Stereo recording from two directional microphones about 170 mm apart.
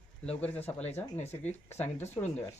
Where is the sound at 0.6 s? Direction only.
40° left (ahead or behind).